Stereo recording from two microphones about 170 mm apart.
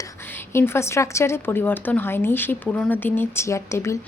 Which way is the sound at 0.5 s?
15° left (ahead or behind).